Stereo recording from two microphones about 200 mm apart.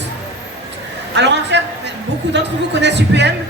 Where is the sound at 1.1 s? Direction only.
60° right (ahead or behind).